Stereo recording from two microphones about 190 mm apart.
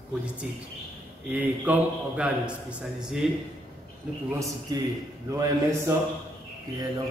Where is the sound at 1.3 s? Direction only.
10° right (ahead or behind).